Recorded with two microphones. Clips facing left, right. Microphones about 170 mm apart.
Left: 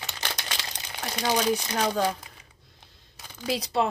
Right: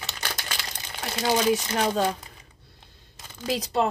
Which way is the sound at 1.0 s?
5° right (ahead or behind).